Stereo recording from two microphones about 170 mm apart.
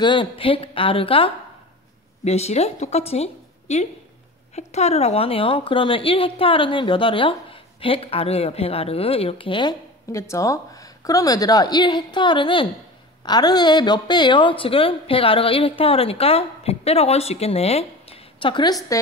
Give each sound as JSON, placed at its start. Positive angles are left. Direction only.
{"t": 0.0, "sound": "a woman's voice", "side_deg": 30}